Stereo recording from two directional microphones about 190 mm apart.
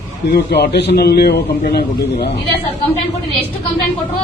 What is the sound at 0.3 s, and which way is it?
A man's voice, 55° left (ahead or behind).